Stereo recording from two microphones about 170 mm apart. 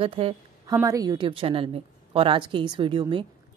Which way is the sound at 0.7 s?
20° right (ahead or behind).